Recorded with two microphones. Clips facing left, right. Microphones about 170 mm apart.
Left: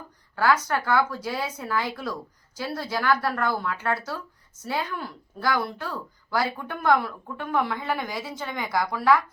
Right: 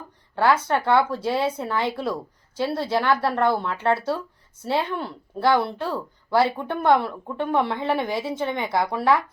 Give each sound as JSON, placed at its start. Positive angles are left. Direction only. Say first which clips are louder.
{"t": 0.3, "sound": "speech", "louder": "right 3 dB", "side_deg": -25}